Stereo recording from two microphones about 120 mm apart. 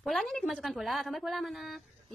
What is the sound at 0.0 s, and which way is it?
A woman's voice, centre (ahead or behind).